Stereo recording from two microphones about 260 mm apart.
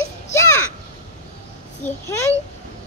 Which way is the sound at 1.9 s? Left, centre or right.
Centre.